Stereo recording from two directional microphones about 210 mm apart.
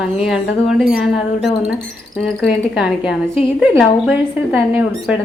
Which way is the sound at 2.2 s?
Centre (ahead or behind).